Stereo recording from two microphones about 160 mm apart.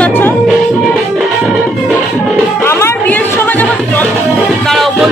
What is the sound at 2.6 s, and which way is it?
Music, 15° left (ahead or behind).